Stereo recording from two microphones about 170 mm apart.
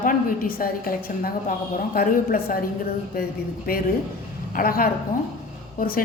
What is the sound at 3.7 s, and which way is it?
A woman's voice, 60° left (ahead or behind).